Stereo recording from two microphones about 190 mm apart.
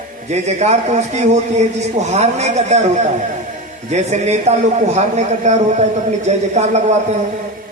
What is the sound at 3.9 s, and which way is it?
A man's voice, 35° right (ahead or behind).